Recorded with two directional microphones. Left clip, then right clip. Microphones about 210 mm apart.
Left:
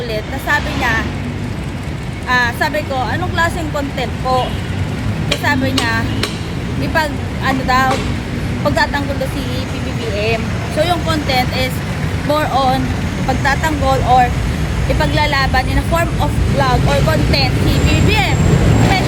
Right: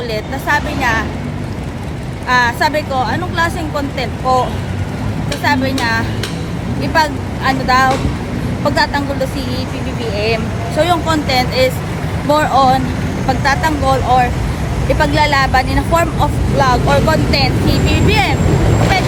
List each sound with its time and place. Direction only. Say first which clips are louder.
0.1 s speech: right 1 dB; 10° right (ahead or behind)
2.3 s speech: right 2 dB; 10° right (ahead or behind)
5.4 s speech: right 2 dB; 10° right (ahead or behind)
10.8 s speech: right 3 dB; 15° right (ahead or behind)